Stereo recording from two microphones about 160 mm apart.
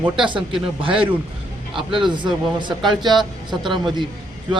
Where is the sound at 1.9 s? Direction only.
30° right (ahead or behind).